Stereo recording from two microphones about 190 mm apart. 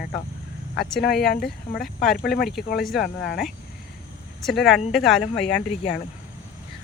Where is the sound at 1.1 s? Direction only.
55° left (ahead or behind).